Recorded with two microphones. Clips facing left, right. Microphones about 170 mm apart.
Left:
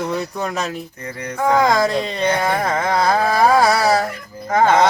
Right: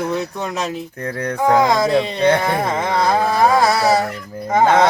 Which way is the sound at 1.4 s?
Centre (ahead or behind).